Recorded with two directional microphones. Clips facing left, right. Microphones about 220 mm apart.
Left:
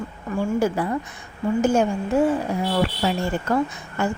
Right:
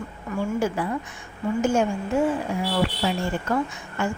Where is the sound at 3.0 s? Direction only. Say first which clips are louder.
Left 2 dB; 40° left (ahead or behind).